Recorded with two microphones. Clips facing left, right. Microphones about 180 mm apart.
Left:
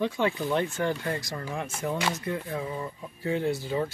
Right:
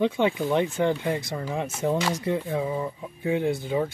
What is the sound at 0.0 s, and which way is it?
Speech, 20° right (ahead or behind).